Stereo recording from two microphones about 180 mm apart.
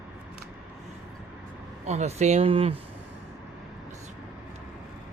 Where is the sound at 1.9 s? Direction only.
40° right (ahead or behind).